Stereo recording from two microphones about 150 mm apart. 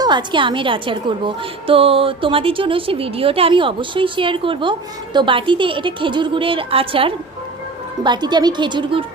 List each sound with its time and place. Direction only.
0.0 s a woman's voice: 30° right (ahead or behind)